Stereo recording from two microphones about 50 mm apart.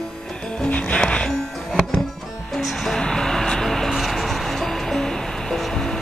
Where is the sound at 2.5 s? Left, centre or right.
Centre.